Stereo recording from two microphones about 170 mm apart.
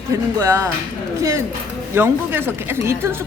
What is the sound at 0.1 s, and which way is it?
Speech, 20° right (ahead or behind).